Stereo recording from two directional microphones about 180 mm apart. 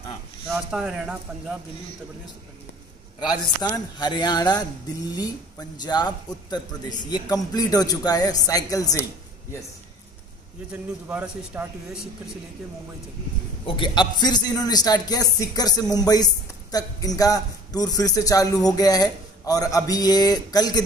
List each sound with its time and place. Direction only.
0.5 s speech: centre (ahead or behind)
3.6 s a man's voice: 20° left (ahead or behind)
10.7 s a man's voice: 10° right (ahead or behind)
13.7 s a man's voice: 25° left (ahead or behind)